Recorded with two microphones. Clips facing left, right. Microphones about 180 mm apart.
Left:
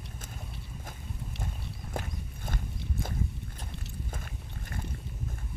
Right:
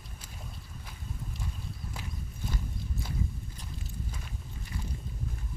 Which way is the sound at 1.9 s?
55° left (ahead or behind).